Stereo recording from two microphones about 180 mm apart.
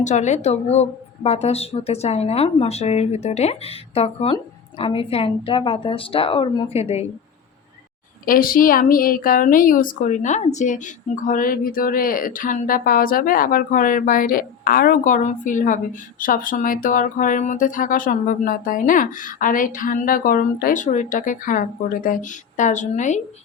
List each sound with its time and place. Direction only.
0.0 s speech: 40° left (ahead or behind)
8.2 s a woman's voice: 50° left (ahead or behind)